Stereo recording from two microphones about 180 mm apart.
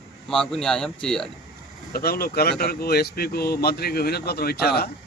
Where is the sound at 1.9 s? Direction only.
55° left (ahead or behind).